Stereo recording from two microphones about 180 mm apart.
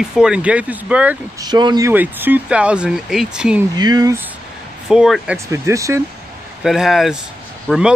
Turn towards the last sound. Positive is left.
turn(degrees=-5)  # may be behind; listen again after turning